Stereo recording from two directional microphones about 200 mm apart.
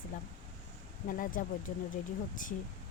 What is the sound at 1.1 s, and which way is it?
Speech, 45° left (ahead or behind).